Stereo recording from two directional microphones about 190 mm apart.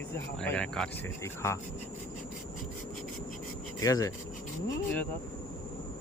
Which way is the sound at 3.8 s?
20° left (ahead or behind).